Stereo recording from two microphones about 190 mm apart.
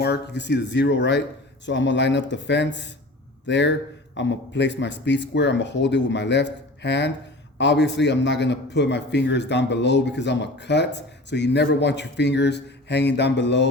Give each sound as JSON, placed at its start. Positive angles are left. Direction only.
{"t": 0.0, "sound": "a man's voice", "side_deg": 60}